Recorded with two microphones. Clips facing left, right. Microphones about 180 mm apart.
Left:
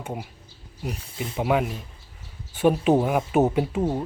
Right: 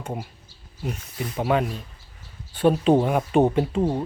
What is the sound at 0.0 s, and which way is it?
Speech, 5° left (ahead or behind).